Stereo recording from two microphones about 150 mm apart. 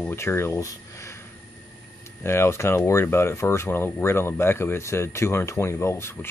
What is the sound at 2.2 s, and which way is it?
Speech, 15° left (ahead or behind).